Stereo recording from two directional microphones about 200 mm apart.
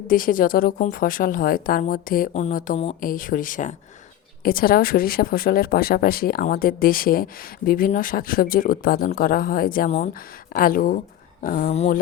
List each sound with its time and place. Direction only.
0.1 s speech: 45° left (ahead or behind)